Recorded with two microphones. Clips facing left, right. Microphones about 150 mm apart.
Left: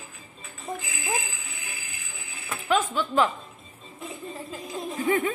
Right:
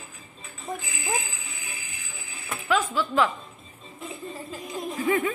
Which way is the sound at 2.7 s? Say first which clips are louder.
Even; 20° left (ahead or behind).